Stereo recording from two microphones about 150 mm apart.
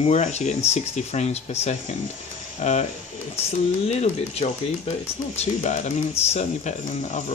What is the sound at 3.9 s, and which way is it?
Speech, 45° left (ahead or behind).